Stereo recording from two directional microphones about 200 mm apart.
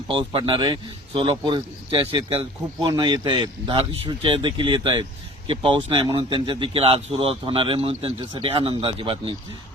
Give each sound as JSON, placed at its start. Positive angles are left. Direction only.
{"t": 0.1, "sound": "a man's voice", "side_deg": -25}